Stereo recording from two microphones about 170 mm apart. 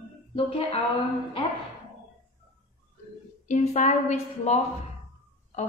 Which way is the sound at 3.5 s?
45° left (ahead or behind).